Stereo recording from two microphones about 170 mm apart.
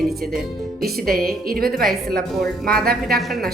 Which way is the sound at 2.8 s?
60° right (ahead or behind).